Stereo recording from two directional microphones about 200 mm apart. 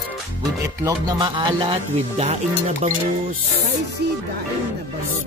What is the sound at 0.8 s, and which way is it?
Speech, 20° right (ahead or behind).